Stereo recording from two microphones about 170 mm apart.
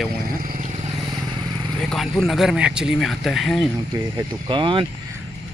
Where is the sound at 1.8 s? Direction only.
5° left (ahead or behind).